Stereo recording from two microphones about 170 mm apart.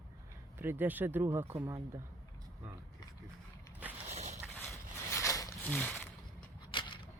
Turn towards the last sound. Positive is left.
turn(degrees=30)  # may be behind; listen again after turning